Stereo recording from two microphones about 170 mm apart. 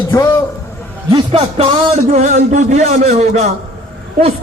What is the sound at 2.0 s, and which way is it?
A man's voice, 45° right (ahead or behind).